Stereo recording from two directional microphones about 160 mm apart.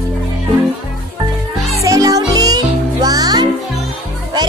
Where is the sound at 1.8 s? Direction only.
20° right (ahead or behind).